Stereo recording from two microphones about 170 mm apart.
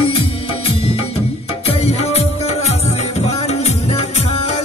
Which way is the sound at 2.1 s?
40° left (ahead or behind).